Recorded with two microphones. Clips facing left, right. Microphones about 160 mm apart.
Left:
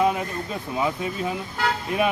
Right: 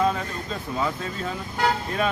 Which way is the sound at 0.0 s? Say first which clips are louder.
Left 2 dB; 15° left (ahead or behind).